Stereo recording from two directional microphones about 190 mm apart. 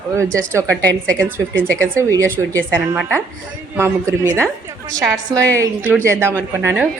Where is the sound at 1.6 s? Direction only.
5° left (ahead or behind).